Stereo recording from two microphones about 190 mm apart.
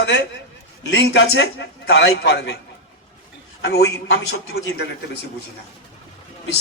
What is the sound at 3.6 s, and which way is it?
A man's voice, 60° left (ahead or behind).